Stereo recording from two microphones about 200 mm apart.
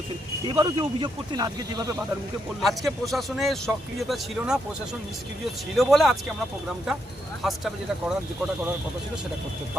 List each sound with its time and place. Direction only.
0.4 s speech: 25° right (ahead or behind)
2.6 s speech: centre (ahead or behind)
5.7 s speech: centre (ahead or behind)
7.4 s speech: centre (ahead or behind)